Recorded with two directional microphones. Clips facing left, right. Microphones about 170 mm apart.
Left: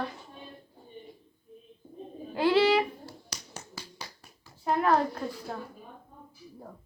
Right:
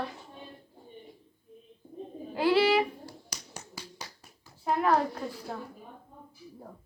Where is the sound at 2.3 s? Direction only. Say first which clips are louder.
Left 1 dB; 10° right (ahead or behind).